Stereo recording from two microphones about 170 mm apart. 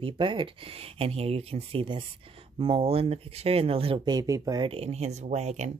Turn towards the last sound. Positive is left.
turn(degrees=-40)  # may be behind; listen again after turning